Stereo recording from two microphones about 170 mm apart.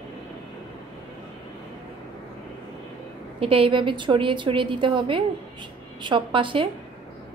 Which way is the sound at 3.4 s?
35° right (ahead or behind).